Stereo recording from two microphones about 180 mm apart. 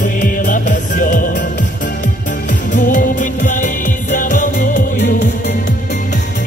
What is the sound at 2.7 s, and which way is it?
Music, 45° left (ahead or behind).